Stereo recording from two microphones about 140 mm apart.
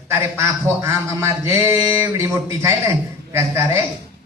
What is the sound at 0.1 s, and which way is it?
A man's voice, 15° right (ahead or behind).